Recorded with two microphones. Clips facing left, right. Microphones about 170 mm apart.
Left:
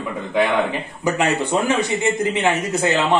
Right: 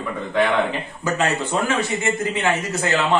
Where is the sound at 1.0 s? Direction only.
15° left (ahead or behind).